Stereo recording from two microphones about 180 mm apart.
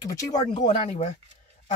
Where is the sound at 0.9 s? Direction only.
40° left (ahead or behind).